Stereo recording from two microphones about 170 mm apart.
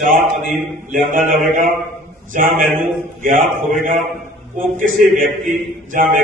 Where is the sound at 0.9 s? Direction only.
50° right (ahead or behind).